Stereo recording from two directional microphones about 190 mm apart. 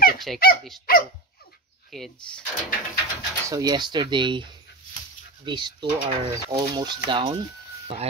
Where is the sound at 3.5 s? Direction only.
20° right (ahead or behind).